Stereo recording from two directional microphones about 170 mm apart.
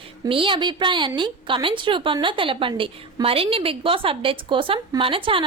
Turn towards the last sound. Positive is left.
turn(degrees=-30)  # may be behind; listen again after turning